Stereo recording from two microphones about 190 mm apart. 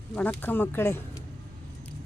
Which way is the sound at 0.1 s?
5° left (ahead or behind).